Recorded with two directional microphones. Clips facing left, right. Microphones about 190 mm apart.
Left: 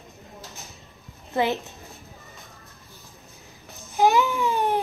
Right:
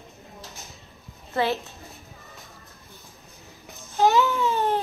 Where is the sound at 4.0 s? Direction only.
15° left (ahead or behind).